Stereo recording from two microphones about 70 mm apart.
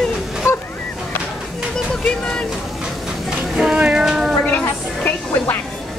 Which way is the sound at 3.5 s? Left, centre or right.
Centre.